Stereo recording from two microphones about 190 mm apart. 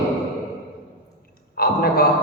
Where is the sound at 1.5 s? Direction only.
55° left (ahead or behind).